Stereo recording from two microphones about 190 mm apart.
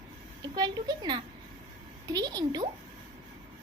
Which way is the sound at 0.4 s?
20° right (ahead or behind).